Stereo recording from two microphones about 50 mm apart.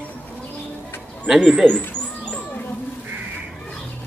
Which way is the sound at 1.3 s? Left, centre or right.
Centre.